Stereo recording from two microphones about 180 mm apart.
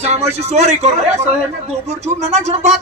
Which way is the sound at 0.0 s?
35° right (ahead or behind).